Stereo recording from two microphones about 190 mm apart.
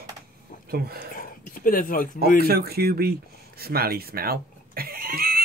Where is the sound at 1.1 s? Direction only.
45° left (ahead or behind).